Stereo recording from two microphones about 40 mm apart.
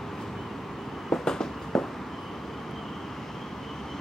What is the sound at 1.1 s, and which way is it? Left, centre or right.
Vehicle, centre.